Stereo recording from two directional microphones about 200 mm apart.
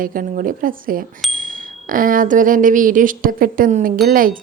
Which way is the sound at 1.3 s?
45° right (ahead or behind).